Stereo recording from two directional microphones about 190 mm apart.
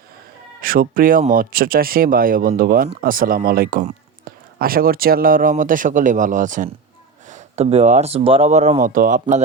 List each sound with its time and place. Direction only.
0.6 s speech: 50° right (ahead or behind)